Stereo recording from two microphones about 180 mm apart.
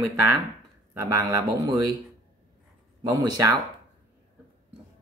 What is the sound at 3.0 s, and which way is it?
Speech, 20° right (ahead or behind).